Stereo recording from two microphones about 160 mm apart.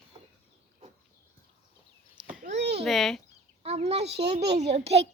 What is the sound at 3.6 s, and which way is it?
A child's voice, 40° right (ahead or behind).